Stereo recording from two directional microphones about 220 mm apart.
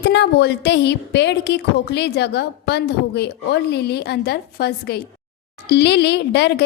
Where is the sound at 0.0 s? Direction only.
50° left (ahead or behind).